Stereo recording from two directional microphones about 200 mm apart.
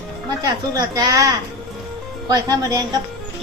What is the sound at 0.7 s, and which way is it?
A woman's voice, 20° right (ahead or behind).